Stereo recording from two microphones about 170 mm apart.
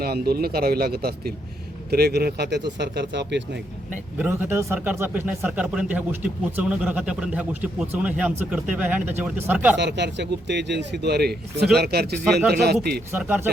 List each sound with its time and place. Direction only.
0.0 s speech: 65° right (ahead or behind)
2.7 s speech: 90° right
4.2 s speech: 10° right (ahead or behind)
9.7 s speech: 90° right; by 12.2 s 70° right (ahead or behind)
12.2 s speech: centre (ahead or behind)
12.5 s speech: 70° right (ahead or behind)
13.1 s speech: 10° right (ahead or behind)